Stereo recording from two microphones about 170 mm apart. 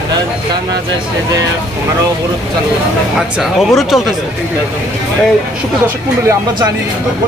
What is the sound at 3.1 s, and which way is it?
Speech, centre (ahead or behind).